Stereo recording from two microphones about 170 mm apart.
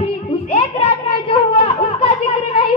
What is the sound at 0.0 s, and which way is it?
Music, 35° left (ahead or behind).